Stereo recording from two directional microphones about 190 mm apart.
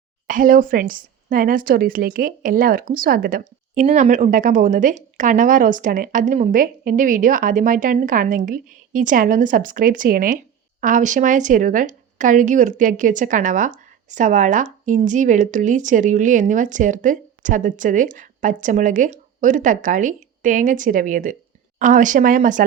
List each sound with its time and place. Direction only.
0.3 s a woman's voice: 45° right (ahead or behind)